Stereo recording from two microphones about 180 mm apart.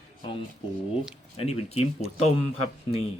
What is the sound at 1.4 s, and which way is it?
Speech, 35° left (ahead or behind).